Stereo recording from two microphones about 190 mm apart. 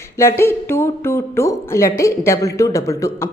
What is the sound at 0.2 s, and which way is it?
Speech, 15° left (ahead or behind).